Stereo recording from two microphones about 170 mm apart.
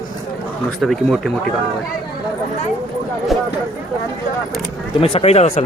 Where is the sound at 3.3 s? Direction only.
Centre (ahead or behind).